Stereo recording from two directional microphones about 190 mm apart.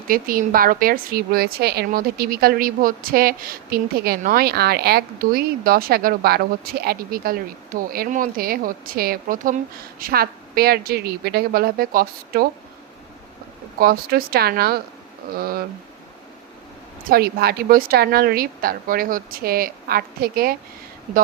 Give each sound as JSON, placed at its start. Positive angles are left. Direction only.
{"t": 0.1, "sound": "a woman's voice", "side_deg": -50}
{"t": 13.7, "sound": "a woman's voice", "side_deg": -50}
{"t": 17.0, "sound": "a woman's voice", "side_deg": -50}